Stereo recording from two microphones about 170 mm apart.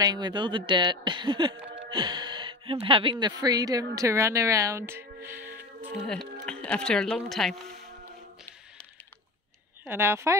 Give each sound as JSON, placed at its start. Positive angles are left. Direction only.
{"t": 0.0, "sound": "speech", "side_deg": -25}
{"t": 6.0, "sound": "speech", "side_deg": 5}
{"t": 9.8, "sound": "speech", "side_deg": -15}